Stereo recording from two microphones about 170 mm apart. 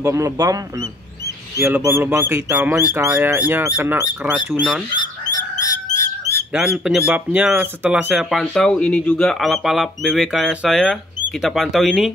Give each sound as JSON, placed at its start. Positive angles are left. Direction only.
{"t": 0.0, "sound": "speech", "side_deg": -15}
{"t": 1.6, "sound": "speech", "side_deg": -15}
{"t": 4.9, "sound": "fowl", "side_deg": 25}
{"t": 5.9, "sound": "bird", "side_deg": 20}
{"t": 6.5, "sound": "speech", "side_deg": -5}